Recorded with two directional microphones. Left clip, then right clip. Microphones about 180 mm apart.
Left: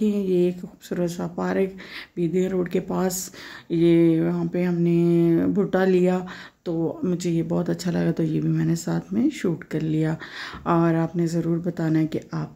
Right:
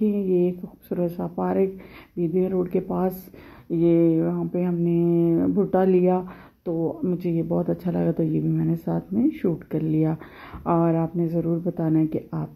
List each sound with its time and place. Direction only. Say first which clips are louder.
0.0 s speech: even; 10° left (ahead or behind)
6.8 s speech: even; 20° left (ahead or behind)
7.2 s speech: even; 10° left (ahead or behind)